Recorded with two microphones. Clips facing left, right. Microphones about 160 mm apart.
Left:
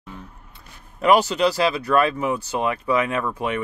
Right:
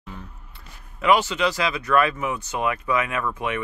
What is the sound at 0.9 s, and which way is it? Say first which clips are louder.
Speech: left 3 dB; 40° left (ahead or behind).